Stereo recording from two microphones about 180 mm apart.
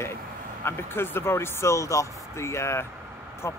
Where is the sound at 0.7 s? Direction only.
15° left (ahead or behind).